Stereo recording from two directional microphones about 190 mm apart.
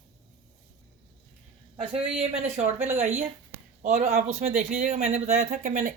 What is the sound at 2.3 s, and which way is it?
Speech, 35° right (ahead or behind).